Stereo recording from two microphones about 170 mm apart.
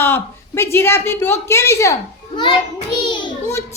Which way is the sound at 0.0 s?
15° left (ahead or behind).